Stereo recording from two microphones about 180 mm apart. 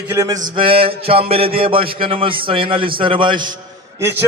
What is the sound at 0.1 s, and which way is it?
Mantra, 15° right (ahead or behind).